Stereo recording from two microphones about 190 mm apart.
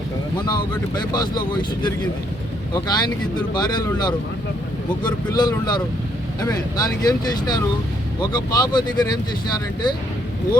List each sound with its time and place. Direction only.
0.4 s speech: 20° left (ahead or behind)
5.4 s speech: 20° left (ahead or behind)